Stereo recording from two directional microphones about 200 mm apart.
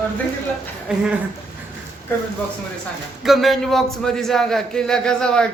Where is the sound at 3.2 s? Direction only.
Centre (ahead or behind).